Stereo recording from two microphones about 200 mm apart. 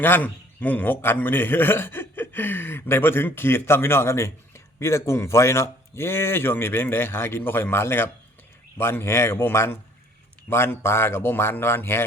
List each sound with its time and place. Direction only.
0.0 s a man's voice: 10° left (ahead or behind)